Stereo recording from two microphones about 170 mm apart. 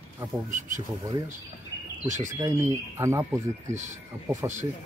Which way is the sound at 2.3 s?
20° right (ahead or behind).